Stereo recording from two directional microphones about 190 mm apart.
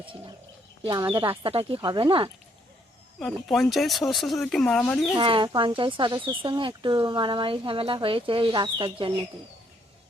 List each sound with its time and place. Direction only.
0.0 s bird: 30° right (ahead or behind)
0.9 s speech: 20° right (ahead or behind)
3.2 s speech: centre (ahead or behind)
5.1 s speech: 25° right (ahead or behind)